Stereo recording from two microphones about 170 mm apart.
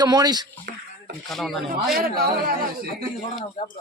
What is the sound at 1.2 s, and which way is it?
Speech, centre (ahead or behind).